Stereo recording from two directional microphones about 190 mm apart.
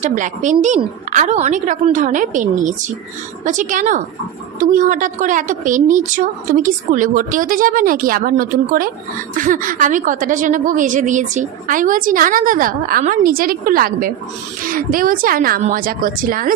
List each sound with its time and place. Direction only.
0.0 s a woman's voice: 40° right (ahead or behind)